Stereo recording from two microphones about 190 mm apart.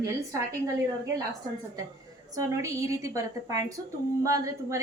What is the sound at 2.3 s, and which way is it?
A woman's voice, 15° right (ahead or behind).